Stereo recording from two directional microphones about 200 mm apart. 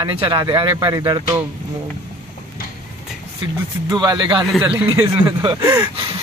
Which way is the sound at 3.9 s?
20° right (ahead or behind).